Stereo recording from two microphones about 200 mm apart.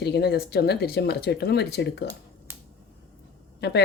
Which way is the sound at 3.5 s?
55° left (ahead or behind).